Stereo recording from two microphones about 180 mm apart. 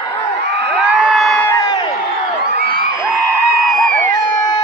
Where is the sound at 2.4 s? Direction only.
60° right (ahead or behind).